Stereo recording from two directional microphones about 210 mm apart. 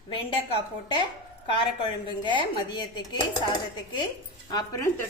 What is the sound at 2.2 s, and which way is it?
Speech, 20° left (ahead or behind).